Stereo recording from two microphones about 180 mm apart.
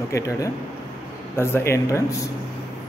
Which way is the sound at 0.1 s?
15° left (ahead or behind).